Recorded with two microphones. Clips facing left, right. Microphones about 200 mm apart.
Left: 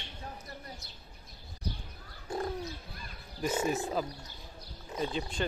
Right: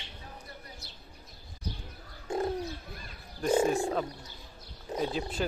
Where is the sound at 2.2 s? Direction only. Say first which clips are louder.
Right 4 dB; 25° right (ahead or behind).